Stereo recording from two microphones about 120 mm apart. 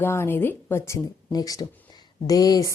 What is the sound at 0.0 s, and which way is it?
A woman's voice, 20° left (ahead or behind).